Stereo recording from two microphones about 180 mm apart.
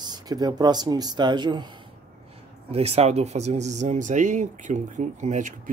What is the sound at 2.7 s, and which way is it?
Speech, 35° right (ahead or behind).